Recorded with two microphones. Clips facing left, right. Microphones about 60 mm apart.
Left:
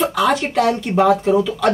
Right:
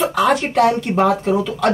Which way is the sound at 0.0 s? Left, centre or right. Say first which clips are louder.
Right 1 dB; centre.